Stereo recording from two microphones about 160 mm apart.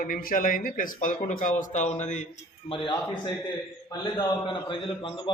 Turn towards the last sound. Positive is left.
turn(degrees=30)  # may be behind; listen again after turning